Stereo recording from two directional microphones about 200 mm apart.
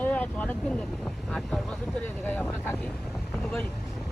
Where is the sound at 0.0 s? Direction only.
5° left (ahead or behind).